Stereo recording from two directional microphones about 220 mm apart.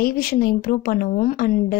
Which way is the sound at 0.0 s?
40° left (ahead or behind).